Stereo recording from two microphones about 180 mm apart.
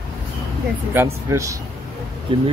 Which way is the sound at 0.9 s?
15° right (ahead or behind).